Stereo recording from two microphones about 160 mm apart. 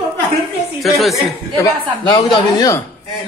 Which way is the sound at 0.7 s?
Centre (ahead or behind).